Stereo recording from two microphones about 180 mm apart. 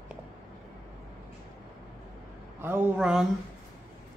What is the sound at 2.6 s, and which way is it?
Speech, 10° right (ahead or behind).